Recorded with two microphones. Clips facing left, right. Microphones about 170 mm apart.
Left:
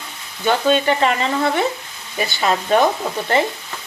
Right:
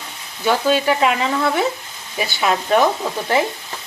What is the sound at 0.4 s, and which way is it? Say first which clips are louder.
Speech: even; 5° right (ahead or behind).